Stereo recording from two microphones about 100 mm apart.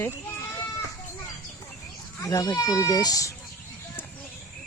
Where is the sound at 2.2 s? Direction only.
35° left (ahead or behind).